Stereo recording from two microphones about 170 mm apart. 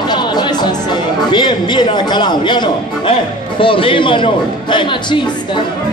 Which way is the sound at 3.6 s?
30° left (ahead or behind).